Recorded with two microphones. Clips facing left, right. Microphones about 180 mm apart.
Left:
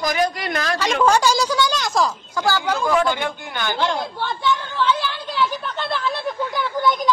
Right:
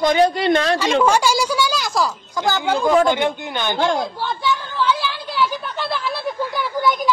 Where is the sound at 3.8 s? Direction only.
45° right (ahead or behind).